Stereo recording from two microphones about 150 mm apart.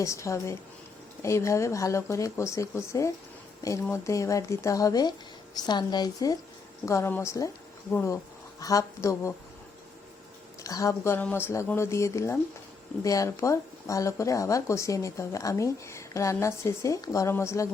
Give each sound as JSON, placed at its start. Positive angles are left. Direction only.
{"t": 0.0, "sound": "speech", "side_deg": 20}
{"t": 10.6, "sound": "speech", "side_deg": 20}